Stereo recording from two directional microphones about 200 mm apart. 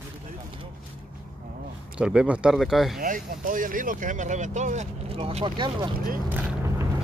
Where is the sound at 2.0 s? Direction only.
5° right (ahead or behind).